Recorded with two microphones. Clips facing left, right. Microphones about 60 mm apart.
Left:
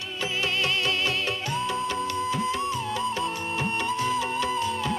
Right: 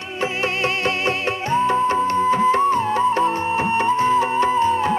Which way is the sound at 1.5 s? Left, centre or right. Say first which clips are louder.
Right 13 dB; right.